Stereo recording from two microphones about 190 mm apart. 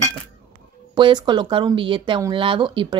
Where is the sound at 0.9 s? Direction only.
25° right (ahead or behind).